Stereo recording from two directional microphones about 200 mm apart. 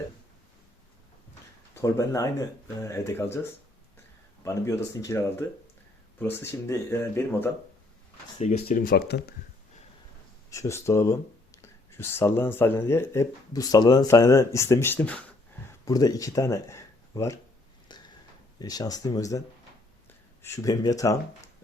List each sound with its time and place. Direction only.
1.7 s speech: 15° left (ahead or behind)
4.4 s speech: 15° left (ahead or behind)
8.4 s speech: 35° left (ahead or behind); by 9.2 s 55° left (ahead or behind)
10.5 s speech: 15° left (ahead or behind)
15.9 s speech: 20° left (ahead or behind)
17.9 s a sound: 20° left (ahead or behind)
18.6 s speech: 20° left (ahead or behind)
20.4 s speech: 15° left (ahead or behind)